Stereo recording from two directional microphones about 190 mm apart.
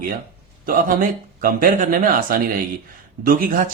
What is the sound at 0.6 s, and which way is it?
Speech, 45° right (ahead or behind).